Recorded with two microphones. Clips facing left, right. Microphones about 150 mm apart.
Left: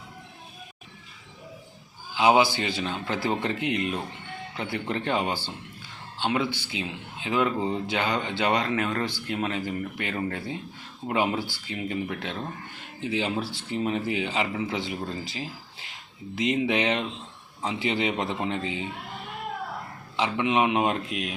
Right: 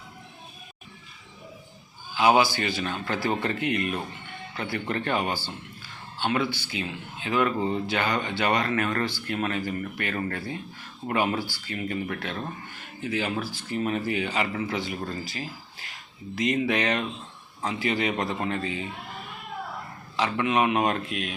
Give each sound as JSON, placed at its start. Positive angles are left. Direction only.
{"t": 2.1, "sound": "a man's voice", "side_deg": 20}
{"t": 20.1, "sound": "a man's voice", "side_deg": 15}